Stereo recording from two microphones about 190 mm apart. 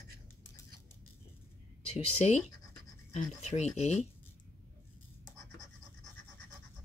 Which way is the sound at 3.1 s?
35° left (ahead or behind).